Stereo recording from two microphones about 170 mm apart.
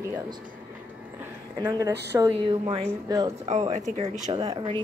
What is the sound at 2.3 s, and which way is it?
A woman's voice, 35° right (ahead or behind).